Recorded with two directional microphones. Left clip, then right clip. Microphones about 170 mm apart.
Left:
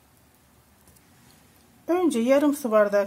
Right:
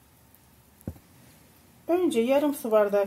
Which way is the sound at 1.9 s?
40° left (ahead or behind).